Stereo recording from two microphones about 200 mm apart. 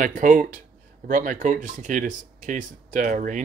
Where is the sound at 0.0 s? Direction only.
40° right (ahead or behind).